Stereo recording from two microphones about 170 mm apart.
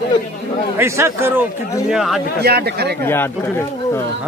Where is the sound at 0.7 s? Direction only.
15° right (ahead or behind).